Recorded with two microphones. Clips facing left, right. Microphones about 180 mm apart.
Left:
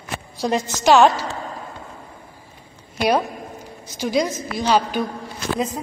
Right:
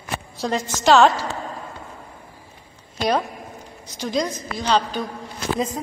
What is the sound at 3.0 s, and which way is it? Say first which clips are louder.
A woman's voice: left 2 dB; 10° left (ahead or behind).